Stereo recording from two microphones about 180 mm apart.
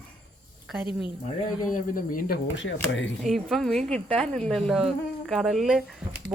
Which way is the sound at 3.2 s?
Centre (ahead or behind).